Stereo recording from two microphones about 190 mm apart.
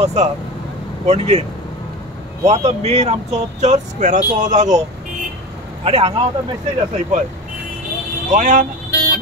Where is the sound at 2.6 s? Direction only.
35° right (ahead or behind).